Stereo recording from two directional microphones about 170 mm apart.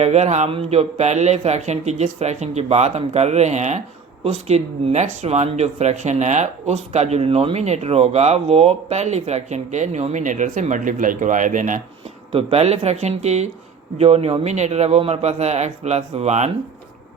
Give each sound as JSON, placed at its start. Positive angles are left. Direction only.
{"t": 0.0, "sound": "speech", "side_deg": -40}
{"t": 12.3, "sound": "speech", "side_deg": -35}